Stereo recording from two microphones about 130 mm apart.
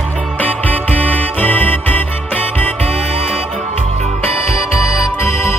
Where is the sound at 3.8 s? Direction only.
55° right (ahead or behind).